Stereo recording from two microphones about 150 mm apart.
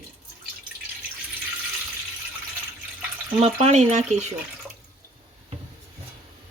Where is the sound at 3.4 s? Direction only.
45° right (ahead or behind).